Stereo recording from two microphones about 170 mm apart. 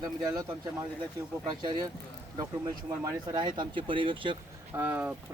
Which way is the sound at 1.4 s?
25° right (ahead or behind).